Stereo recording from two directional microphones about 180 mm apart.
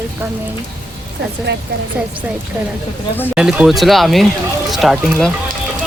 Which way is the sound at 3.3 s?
5° right (ahead or behind).